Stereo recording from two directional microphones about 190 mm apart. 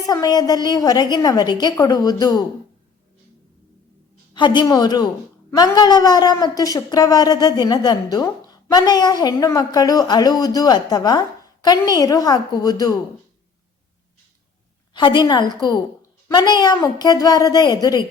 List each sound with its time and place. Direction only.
0.1 s a woman's voice: 20° left (ahead or behind)
4.4 s a woman's voice: 25° left (ahead or behind)
14.9 s a woman's voice: 25° left (ahead or behind)